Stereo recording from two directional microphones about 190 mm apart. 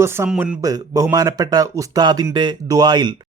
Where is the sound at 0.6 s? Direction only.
20° right (ahead or behind).